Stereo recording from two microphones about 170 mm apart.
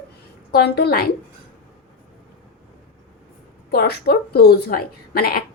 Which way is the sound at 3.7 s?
70° left (ahead or behind).